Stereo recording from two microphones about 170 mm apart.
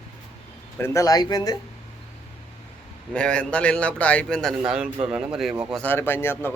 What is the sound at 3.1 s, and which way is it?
Speech, 5° left (ahead or behind).